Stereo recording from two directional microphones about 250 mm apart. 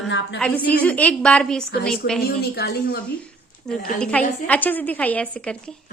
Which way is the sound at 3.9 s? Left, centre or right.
Centre.